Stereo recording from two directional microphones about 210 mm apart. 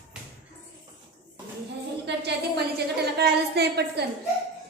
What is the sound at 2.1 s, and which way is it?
A woman's voice, 55° right (ahead or behind).